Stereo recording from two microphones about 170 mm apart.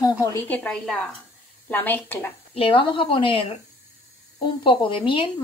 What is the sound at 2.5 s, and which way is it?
Speech, 35° left (ahead or behind).